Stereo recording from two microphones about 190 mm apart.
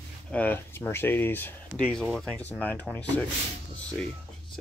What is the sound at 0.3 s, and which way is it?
Speech, 10° left (ahead or behind).